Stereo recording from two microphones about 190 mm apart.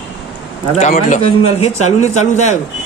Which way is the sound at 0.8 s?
40° left (ahead or behind).